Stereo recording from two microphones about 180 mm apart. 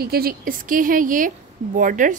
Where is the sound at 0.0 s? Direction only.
60° right (ahead or behind).